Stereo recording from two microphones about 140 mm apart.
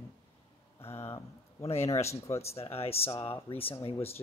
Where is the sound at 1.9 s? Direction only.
20° left (ahead or behind).